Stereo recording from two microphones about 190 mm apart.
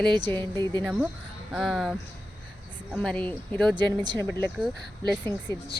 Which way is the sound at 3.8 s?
20° right (ahead or behind).